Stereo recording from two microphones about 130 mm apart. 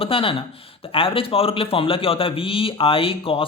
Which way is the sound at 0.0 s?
45° left (ahead or behind).